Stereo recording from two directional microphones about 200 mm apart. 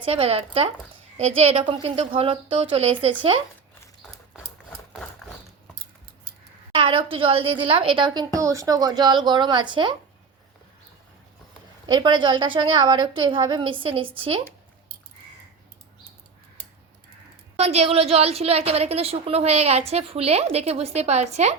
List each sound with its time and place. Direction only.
0.0 s a woman's voice: 30° right (ahead or behind)
6.7 s a woman's voice: 25° right (ahead or behind)
11.9 s a woman's voice: 25° right (ahead or behind)
17.6 s a woman's voice: 30° right (ahead or behind)